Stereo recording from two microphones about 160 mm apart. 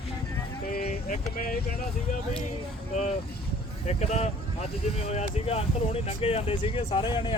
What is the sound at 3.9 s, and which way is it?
Speech, 45° left (ahead or behind).